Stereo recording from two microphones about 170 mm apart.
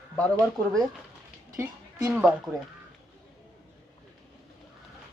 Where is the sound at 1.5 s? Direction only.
15° right (ahead or behind).